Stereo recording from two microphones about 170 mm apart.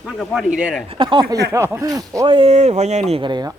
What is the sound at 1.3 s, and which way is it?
Speech, 15° right (ahead or behind).